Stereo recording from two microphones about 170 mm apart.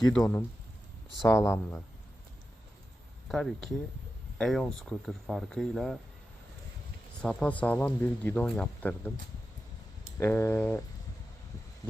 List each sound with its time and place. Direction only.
0.1 s speech: 10° left (ahead or behind)
3.2 s speech: centre (ahead or behind)
7.2 s speech: 5° left (ahead or behind)
10.2 s speech: 10° left (ahead or behind)